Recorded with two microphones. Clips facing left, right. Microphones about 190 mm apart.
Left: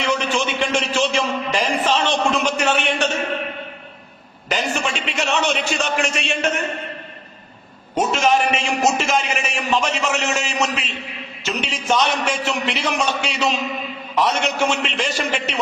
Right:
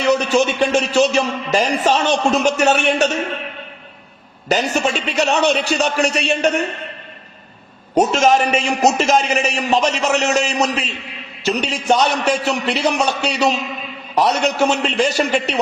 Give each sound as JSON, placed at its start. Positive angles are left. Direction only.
{"t": 0.1, "sound": "a man's voice", "side_deg": -40}
{"t": 4.4, "sound": "a man's voice", "side_deg": -40}
{"t": 7.9, "sound": "a man's voice", "side_deg": -40}